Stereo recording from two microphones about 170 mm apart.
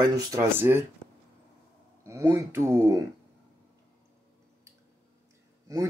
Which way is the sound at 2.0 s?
15° right (ahead or behind).